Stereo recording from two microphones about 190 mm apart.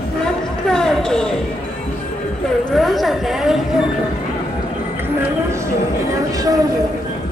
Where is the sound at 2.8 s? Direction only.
Centre (ahead or behind).